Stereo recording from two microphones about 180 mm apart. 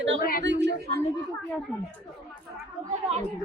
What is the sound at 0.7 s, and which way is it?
Speech, 60° right (ahead or behind).